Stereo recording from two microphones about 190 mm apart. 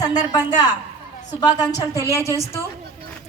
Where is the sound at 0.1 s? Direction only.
20° left (ahead or behind).